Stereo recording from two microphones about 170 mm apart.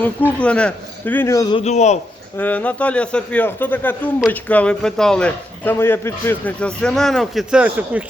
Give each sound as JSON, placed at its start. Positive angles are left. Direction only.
{"t": 0.3, "sound": "speech", "side_deg": 5}
{"t": 1.5, "sound": "a man's voice", "side_deg": 40}
{"t": 2.4, "sound": "a man's voice", "side_deg": 10}